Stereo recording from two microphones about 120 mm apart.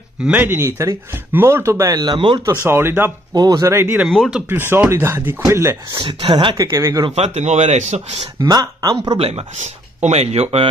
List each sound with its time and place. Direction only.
0.2 s speech: 15° right (ahead or behind); by 2.4 s 40° right (ahead or behind)
2.4 s speech: 20° right (ahead or behind)
3.3 s speech: 30° right (ahead or behind)
4.1 s speech: 5° left (ahead or behind)
4.5 s speech: 20° right (ahead or behind)
5.9 s speech: 45° right (ahead or behind); by 7.1 s 30° right (ahead or behind)
7.1 s speech: 60° right (ahead or behind)
8.4 s speech: 35° right (ahead or behind)
9.2 s speech: 60° right (ahead or behind)